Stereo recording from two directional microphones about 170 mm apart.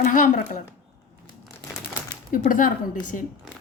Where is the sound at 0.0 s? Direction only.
50° left (ahead or behind).